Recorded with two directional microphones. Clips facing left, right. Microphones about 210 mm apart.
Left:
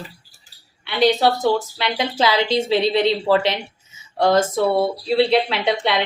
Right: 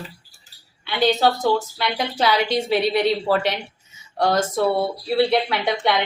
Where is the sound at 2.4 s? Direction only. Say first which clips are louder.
Left 2 dB; 25° left (ahead or behind).